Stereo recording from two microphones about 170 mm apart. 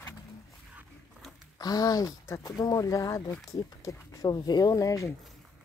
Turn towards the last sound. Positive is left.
turn(degrees=20)  # may be behind; listen again after turning